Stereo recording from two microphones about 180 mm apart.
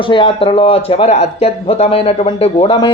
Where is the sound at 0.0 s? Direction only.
30° left (ahead or behind).